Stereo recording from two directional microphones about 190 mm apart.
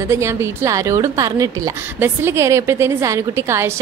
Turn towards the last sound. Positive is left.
turn(degrees=-15)  # may be behind; listen again after turning